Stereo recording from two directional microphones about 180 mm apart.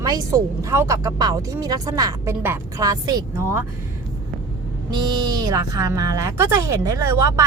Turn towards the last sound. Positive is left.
turn(degrees=-15)  # may be behind; listen again after turning